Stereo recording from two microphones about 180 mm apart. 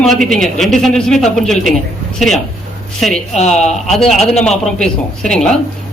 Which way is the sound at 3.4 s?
40° left (ahead or behind).